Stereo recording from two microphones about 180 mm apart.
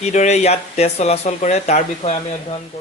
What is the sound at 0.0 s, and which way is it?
Speech, 40° left (ahead or behind).